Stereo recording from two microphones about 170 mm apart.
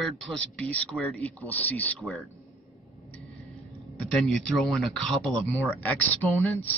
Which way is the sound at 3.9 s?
5° left (ahead or behind).